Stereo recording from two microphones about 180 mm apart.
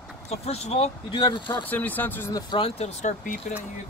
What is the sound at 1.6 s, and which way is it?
Speech, 10° left (ahead or behind).